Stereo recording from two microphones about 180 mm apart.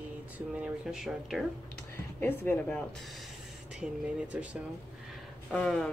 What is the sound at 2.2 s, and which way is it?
Speech, 10° left (ahead or behind).